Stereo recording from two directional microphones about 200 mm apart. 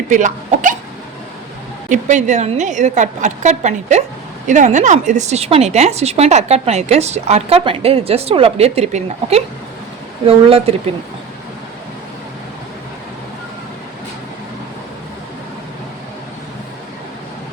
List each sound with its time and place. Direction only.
0.1 s speech: 40° right (ahead or behind)
1.9 s a woman's voice: 35° right (ahead or behind)